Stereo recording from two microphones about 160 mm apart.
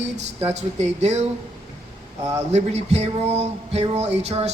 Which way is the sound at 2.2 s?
20° right (ahead or behind).